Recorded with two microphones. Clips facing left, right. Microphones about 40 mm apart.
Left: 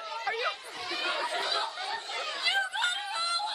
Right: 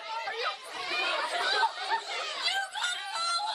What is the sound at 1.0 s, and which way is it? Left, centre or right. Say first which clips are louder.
Chatter: right 1 dB; centre.